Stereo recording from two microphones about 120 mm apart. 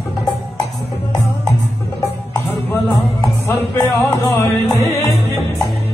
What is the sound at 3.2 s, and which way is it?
Music, 20° left (ahead or behind).